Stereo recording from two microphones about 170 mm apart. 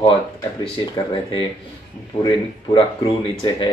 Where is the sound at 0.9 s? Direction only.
30° left (ahead or behind).